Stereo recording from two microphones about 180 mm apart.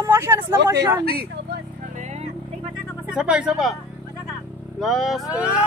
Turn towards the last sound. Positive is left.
turn(degrees=0)  # may be behind; listen again after turning